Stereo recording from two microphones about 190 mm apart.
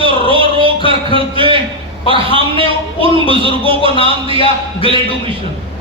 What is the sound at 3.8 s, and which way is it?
Music, 30° left (ahead or behind).